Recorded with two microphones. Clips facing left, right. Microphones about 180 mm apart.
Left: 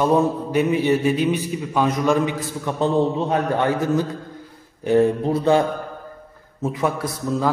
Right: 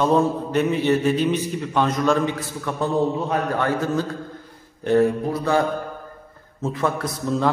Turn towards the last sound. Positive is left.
turn(degrees=10)  # may be behind; listen again after turning